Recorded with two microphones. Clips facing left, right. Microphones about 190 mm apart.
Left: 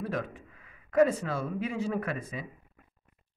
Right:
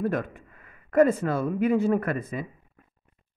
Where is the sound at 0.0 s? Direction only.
55° right (ahead or behind).